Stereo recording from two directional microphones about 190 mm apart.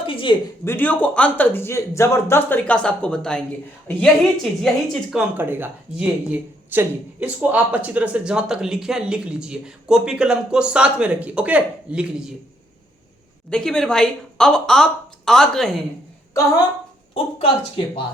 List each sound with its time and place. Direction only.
0.0 s a sound: 25° left (ahead or behind)
0.6 s speech: 10° left (ahead or behind)
5.4 s speech: 10° right (ahead or behind)
13.5 s speech: 5° left (ahead or behind)
17.3 s speech: 30° left (ahead or behind)